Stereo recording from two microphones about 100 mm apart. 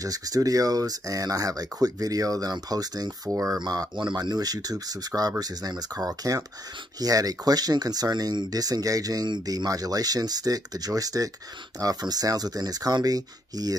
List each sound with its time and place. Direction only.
0.0 s speech: 40° right (ahead or behind)